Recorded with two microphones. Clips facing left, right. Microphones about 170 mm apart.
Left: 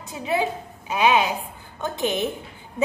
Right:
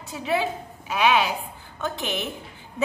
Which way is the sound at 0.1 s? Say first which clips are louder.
Left 1 dB; 20° left (ahead or behind).